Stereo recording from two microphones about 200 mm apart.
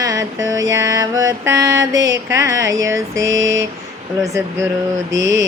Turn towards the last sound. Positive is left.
turn(degrees=-65)  # may be behind; listen again after turning